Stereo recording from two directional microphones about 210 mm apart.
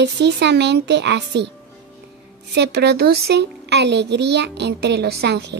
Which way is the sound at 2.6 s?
50° right (ahead or behind).